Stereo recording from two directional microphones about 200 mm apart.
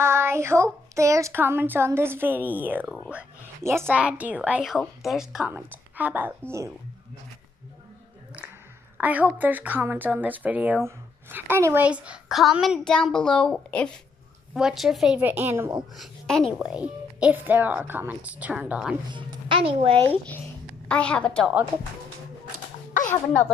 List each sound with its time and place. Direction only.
0.0 s a woman's voice: 10° right (ahead or behind)
3.1 s a sound: 10° right (ahead or behind)
3.9 s a woman's voice: 5° right (ahead or behind)
8.9 s a woman's voice: 5° right (ahead or behind)
16.0 s a woman's voice: 5° left (ahead or behind)
19.0 s speech: 25° right (ahead or behind)
20.9 s a woman's voice: 5° left (ahead or behind)